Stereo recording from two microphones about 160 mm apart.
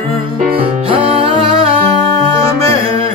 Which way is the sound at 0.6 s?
35° right (ahead or behind).